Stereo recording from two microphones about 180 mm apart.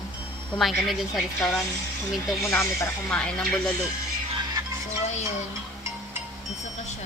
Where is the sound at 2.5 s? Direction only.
15° left (ahead or behind).